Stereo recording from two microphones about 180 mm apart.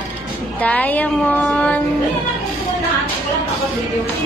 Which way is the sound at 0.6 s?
10° left (ahead or behind).